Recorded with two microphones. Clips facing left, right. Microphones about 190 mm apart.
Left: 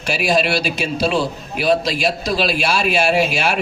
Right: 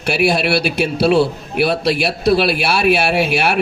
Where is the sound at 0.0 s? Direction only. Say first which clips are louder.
Right 2 dB; 60° right (ahead or behind).